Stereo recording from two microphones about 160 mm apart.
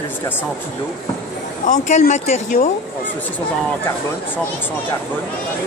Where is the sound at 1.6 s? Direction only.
50° left (ahead or behind).